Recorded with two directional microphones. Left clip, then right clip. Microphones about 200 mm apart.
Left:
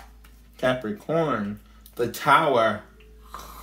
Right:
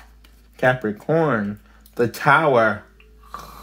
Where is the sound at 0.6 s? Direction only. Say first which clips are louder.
Right 5 dB; 40° right (ahead or behind).